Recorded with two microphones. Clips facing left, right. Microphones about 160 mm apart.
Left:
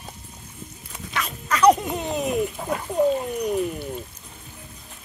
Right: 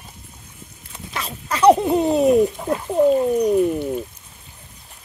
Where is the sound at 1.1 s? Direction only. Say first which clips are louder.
Even; 30° right (ahead or behind).